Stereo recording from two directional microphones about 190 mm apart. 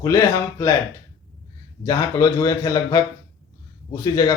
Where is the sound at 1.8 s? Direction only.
20° left (ahead or behind).